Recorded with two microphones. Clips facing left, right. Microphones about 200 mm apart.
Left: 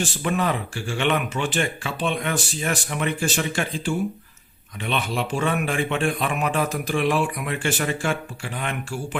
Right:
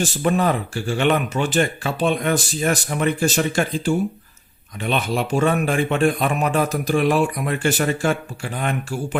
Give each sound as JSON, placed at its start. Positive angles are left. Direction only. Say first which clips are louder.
{"t": 0.0, "sound": "speech", "louder": "right 5 dB", "side_deg": -40}